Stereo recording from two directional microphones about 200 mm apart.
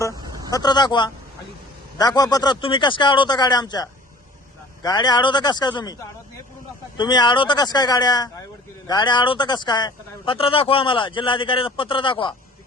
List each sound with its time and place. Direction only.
0.5 s speech: 20° left (ahead or behind)